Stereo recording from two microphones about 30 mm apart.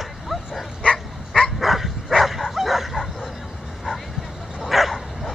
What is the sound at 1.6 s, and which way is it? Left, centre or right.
Dog, centre.